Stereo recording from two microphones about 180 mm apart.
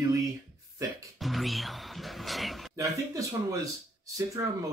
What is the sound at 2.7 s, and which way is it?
Speech, 20° right (ahead or behind).